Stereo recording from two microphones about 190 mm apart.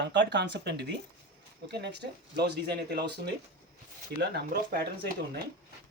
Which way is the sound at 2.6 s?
60° right (ahead or behind).